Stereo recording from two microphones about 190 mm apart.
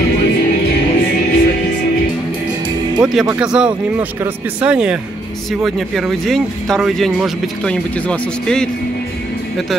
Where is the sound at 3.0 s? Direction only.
5° right (ahead or behind).